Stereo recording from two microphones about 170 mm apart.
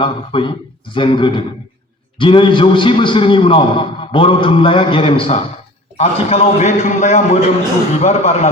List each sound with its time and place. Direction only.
0.0 s a man's voice: 30° left (ahead or behind)